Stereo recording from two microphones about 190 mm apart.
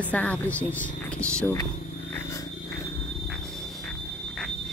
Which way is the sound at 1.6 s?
15° left (ahead or behind).